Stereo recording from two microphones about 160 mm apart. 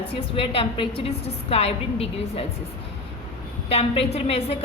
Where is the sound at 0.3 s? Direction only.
35° left (ahead or behind).